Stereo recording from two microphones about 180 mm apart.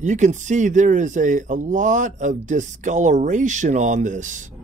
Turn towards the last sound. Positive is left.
turn(degrees=-45)  # may be behind; listen again after turning